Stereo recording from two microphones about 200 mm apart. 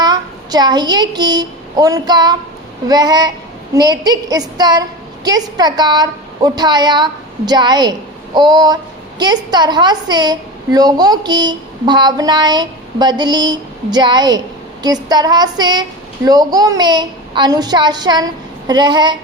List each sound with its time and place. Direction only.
0.0 s a child's voice: 20° right (ahead or behind)